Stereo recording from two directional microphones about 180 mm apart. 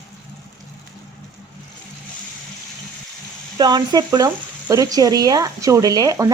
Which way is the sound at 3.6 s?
25° right (ahead or behind).